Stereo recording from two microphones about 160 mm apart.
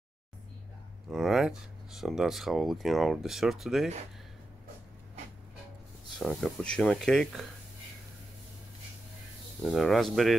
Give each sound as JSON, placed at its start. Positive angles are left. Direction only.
{"t": 1.1, "sound": "speech", "side_deg": 0}
{"t": 6.1, "sound": "speech", "side_deg": 5}
{"t": 9.6, "sound": "speech", "side_deg": 0}